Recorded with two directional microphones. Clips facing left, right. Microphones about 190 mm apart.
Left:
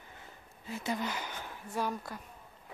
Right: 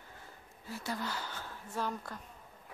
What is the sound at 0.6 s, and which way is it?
A woman's voice, 20° left (ahead or behind).